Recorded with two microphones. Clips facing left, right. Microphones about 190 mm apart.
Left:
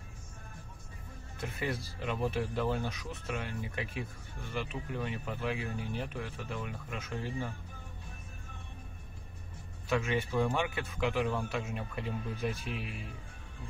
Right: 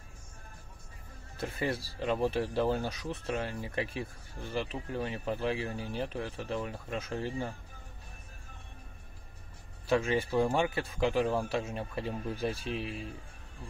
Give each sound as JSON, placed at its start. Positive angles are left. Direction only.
{"t": 1.4, "sound": "speech", "side_deg": -30}
{"t": 9.8, "sound": "speech", "side_deg": -35}